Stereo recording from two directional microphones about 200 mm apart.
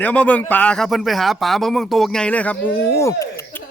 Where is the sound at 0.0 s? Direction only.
5° left (ahead or behind).